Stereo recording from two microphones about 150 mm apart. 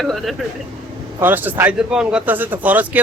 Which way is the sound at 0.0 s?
Centre (ahead or behind).